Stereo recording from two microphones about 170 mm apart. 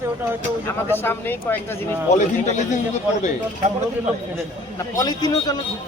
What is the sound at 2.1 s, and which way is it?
Speech, 45° left (ahead or behind).